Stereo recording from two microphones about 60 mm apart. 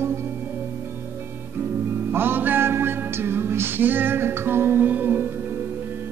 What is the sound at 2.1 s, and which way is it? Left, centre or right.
Music, right.